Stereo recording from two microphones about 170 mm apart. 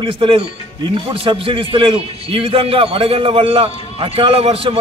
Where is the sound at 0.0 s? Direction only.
30° right (ahead or behind).